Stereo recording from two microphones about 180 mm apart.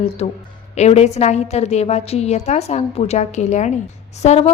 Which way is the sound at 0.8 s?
35° left (ahead or behind).